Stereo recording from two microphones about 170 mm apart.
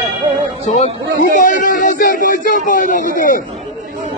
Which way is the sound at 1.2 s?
50° left (ahead or behind).